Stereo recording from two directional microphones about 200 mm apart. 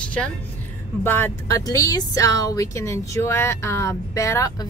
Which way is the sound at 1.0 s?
10° left (ahead or behind).